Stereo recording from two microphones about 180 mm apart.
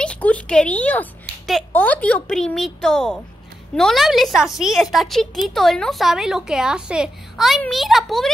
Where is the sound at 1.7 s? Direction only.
10° left (ahead or behind).